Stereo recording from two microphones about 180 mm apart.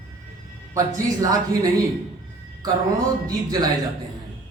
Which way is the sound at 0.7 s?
20° right (ahead or behind).